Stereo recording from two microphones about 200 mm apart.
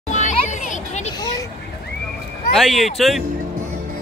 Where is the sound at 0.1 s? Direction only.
35° left (ahead or behind).